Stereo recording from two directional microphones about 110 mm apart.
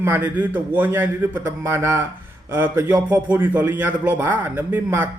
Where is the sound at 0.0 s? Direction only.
20° right (ahead or behind).